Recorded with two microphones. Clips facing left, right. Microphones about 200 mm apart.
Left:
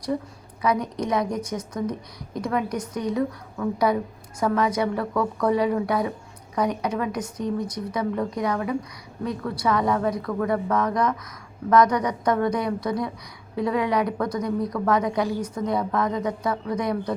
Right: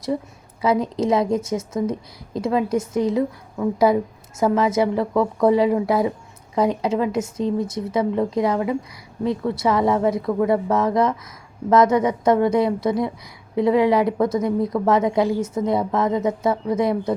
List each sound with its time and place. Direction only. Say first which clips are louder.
0.6 s speech: right 5 dB; 25° right (ahead or behind)